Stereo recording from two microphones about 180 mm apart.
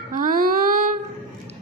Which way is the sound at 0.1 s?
50° right (ahead or behind).